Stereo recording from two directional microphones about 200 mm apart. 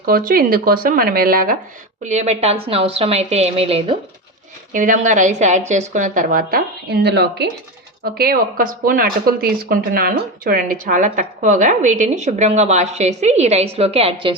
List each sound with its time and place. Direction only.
0.0 s speech: 45° right (ahead or behind)
2.0 s speech: 35° right (ahead or behind)
4.7 s speech: 40° right (ahead or behind)